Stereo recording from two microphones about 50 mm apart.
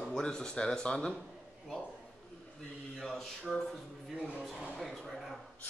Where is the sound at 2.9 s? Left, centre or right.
Centre.